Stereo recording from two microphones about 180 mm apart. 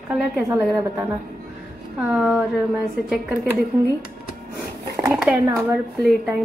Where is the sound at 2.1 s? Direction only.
Centre (ahead or behind).